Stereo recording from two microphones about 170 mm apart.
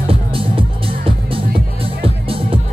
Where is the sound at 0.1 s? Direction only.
30° right (ahead or behind).